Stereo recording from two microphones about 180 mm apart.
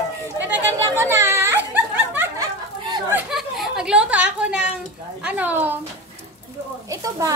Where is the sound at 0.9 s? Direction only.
15° right (ahead or behind).